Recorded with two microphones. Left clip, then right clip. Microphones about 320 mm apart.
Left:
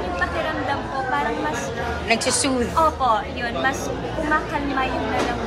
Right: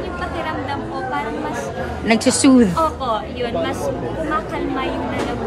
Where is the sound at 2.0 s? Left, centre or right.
Right.